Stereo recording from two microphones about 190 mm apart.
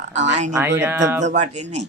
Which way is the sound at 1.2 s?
35° right (ahead or behind).